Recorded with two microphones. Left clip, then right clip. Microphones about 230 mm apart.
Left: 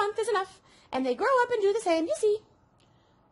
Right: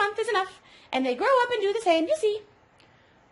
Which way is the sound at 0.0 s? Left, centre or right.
Left.